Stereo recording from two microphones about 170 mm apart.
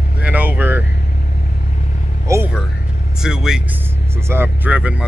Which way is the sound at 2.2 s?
15° right (ahead or behind).